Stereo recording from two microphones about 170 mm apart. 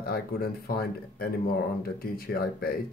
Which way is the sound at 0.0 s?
65° left (ahead or behind).